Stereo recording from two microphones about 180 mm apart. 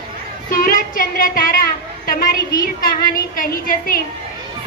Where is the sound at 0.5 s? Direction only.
50° left (ahead or behind).